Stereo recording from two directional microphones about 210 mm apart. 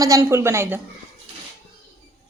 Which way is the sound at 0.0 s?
15° right (ahead or behind).